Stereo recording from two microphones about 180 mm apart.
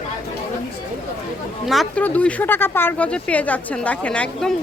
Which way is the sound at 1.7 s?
5° left (ahead or behind).